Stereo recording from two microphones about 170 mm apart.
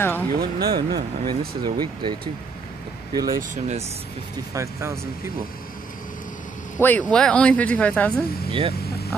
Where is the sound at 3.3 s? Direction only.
45° right (ahead or behind).